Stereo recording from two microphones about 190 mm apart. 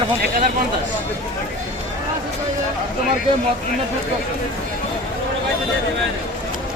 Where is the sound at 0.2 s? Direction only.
45° right (ahead or behind).